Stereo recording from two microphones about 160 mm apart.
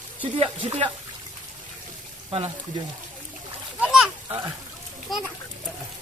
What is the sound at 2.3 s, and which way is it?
Speech, 35° right (ahead or behind).